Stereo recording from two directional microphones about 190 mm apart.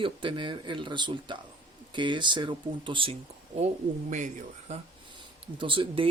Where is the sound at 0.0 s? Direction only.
25° right (ahead or behind).